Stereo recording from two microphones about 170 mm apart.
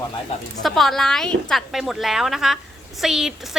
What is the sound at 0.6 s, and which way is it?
A woman's voice, centre (ahead or behind).